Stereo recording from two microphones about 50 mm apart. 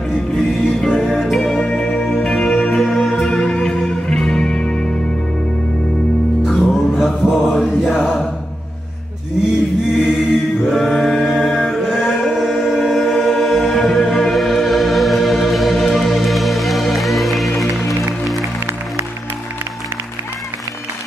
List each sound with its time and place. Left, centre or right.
0.1 s music: centre
1.4 s music: centre
6.4 s music: centre
9.4 s mantra: centre
11.2 s a sound: centre
12.3 s music: centre